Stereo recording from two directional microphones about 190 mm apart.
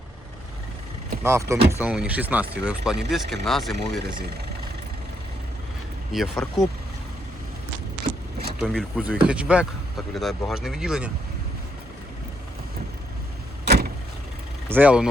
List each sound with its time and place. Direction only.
1.2 s speech: 15° right (ahead or behind); by 4.0 s centre (ahead or behind)
6.1 s speech: centre (ahead or behind)
8.5 s speech: centre (ahead or behind)
13.7 s vehicle: 55° right (ahead or behind)
14.7 s speech: 10° right (ahead or behind)